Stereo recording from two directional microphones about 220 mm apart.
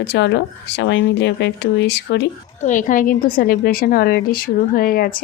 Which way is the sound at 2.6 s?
35° left (ahead or behind).